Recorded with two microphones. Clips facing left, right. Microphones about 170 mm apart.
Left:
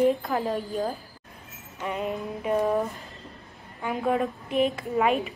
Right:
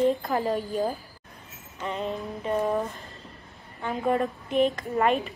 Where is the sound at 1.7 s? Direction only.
10° left (ahead or behind).